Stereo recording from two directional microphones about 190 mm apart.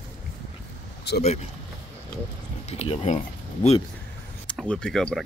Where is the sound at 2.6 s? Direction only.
35° left (ahead or behind).